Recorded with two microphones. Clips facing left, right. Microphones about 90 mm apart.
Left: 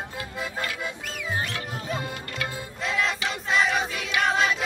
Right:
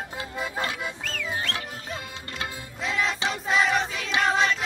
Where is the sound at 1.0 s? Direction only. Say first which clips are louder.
Even; 15° left (ahead or behind).